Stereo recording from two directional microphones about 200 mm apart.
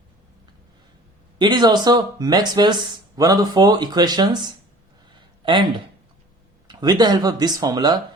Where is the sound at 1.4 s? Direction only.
20° right (ahead or behind).